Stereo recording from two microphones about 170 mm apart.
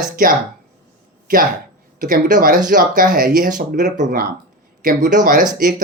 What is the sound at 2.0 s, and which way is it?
Speech, 55° right (ahead or behind).